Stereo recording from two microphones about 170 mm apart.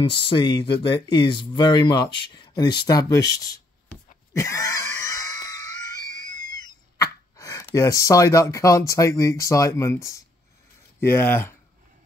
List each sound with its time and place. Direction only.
0.0 s speech: 30° left (ahead or behind)
2.9 s a sound: 20° left (ahead or behind)
11.0 s speech: 15° left (ahead or behind)